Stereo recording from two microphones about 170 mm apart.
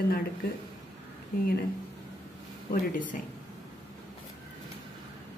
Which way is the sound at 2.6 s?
50° left (ahead or behind).